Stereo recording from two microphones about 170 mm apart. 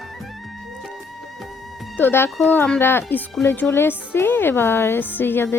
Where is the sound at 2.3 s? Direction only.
Centre (ahead or behind).